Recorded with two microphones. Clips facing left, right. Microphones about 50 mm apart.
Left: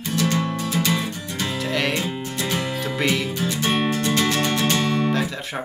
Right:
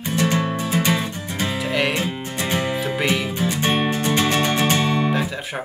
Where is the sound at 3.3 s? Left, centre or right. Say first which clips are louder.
Right 2 dB; right.